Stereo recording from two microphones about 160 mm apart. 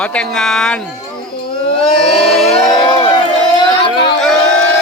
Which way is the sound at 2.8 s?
30° left (ahead or behind).